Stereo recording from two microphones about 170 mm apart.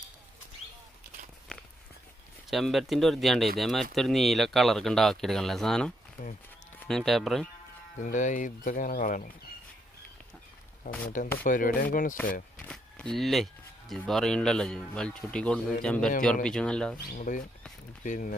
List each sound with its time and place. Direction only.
2.5 s speech: centre (ahead or behind)
8.0 s speech: 50° left (ahead or behind)
10.8 s speech: 55° left (ahead or behind)
12.5 s speech: 5° left (ahead or behind)
17.1 s speech: 50° left (ahead or behind)